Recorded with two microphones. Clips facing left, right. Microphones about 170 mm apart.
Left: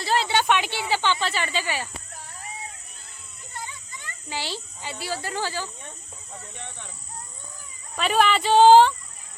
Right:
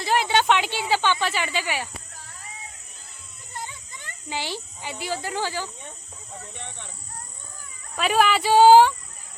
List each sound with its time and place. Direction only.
0.0 s speech: 15° right (ahead or behind)
4.3 s speech: 15° right (ahead or behind)
6.5 s speech: centre (ahead or behind)
7.9 s speech: 5° right (ahead or behind)